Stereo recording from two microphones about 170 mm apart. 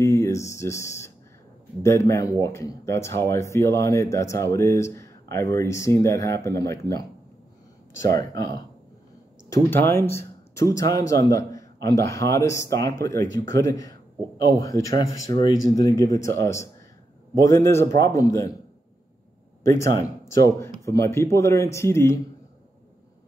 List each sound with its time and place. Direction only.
0.0 s speech: 15° left (ahead or behind)
9.5 s a man's voice: 15° left (ahead or behind)
19.6 s speech: 15° left (ahead or behind)